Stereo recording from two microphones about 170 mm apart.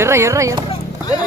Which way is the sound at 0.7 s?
20° left (ahead or behind).